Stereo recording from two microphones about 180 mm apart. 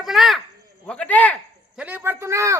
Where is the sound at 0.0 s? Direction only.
Centre (ahead or behind).